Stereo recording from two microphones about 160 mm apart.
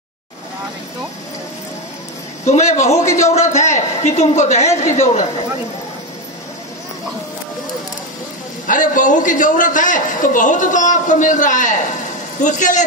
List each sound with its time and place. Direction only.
2.4 s a man's voice: 45° left (ahead or behind)
3.0 s speech: 20° left (ahead or behind)
3.5 s a man's voice: 45° left (ahead or behind)
8.6 s a man's voice: 55° left (ahead or behind)